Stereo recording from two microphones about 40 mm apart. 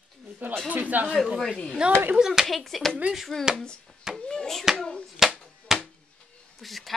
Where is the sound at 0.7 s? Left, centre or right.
Right.